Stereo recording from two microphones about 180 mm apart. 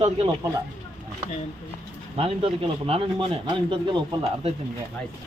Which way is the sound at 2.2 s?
30° right (ahead or behind).